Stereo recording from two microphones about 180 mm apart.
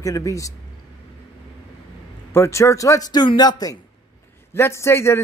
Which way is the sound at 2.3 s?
15° left (ahead or behind).